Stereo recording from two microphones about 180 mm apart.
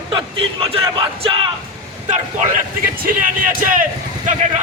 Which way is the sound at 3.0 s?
50° right (ahead or behind).